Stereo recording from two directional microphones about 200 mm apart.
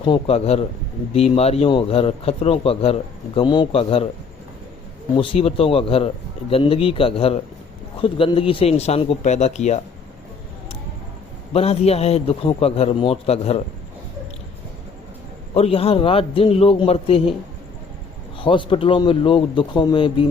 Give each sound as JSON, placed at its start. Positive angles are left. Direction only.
{"t": 0.0, "sound": "a man's voice", "side_deg": 30}
{"t": 5.1, "sound": "a man's voice", "side_deg": 25}
{"t": 11.5, "sound": "a man's voice", "side_deg": 30}
{"t": 15.5, "sound": "a man's voice", "side_deg": 30}
{"t": 18.3, "sound": "a man's voice", "side_deg": 25}